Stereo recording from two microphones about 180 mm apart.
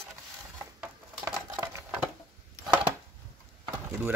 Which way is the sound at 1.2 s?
15° right (ahead or behind).